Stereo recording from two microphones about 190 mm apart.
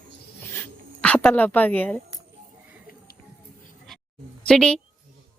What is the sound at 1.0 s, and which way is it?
A woman's voice, 10° left (ahead or behind).